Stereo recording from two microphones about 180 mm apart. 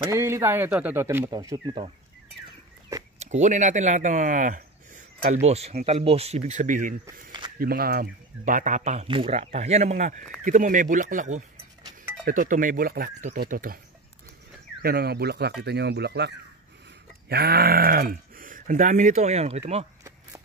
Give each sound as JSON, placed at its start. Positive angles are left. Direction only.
{"t": 0.0, "sound": "speech", "side_deg": -15}
{"t": 3.2, "sound": "speech", "side_deg": -40}
{"t": 9.0, "sound": "speech", "side_deg": -30}
{"t": 14.8, "sound": "speech", "side_deg": -60}